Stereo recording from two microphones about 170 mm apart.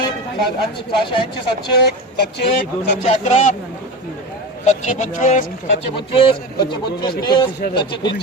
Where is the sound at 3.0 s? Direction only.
45° left (ahead or behind).